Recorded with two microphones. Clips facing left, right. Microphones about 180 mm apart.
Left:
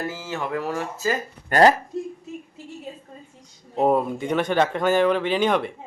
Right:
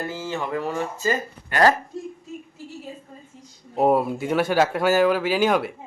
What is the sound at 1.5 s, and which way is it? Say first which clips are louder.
Speech: left 3 dB; 45° left (ahead or behind).